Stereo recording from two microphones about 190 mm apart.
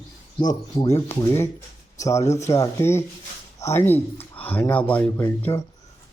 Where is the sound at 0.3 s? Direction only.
20° left (ahead or behind).